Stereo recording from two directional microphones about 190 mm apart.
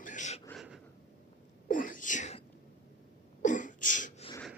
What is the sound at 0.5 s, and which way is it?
Gasp, 5° right (ahead or behind).